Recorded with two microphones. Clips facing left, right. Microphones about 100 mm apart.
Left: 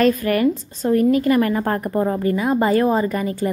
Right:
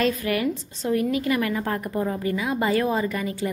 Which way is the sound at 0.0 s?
45° left (ahead or behind).